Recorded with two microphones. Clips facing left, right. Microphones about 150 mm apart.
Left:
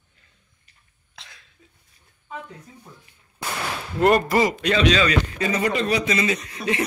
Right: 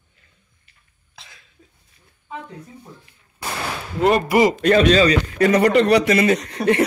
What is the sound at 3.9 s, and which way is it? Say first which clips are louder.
Speech: even; centre (ahead or behind).